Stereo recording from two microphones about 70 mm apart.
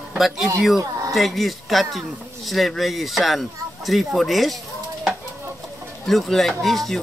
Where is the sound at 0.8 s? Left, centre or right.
Right.